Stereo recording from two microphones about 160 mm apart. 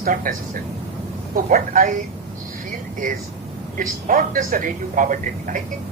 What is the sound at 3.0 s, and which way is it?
Speech, 55° right (ahead or behind).